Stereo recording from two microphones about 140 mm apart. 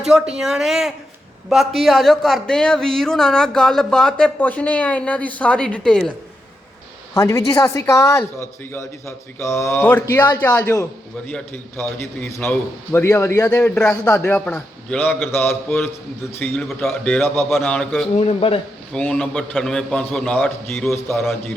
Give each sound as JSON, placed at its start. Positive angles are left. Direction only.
{"t": 0.0, "sound": "a man's voice", "side_deg": -5}
{"t": 7.1, "sound": "a man's voice", "side_deg": 20}
{"t": 17.5, "sound": "a man's voice", "side_deg": 5}
{"t": 18.2, "sound": "speech", "side_deg": 45}
{"t": 18.9, "sound": "a man's voice", "side_deg": 10}
{"t": 20.9, "sound": "a man's voice", "side_deg": 20}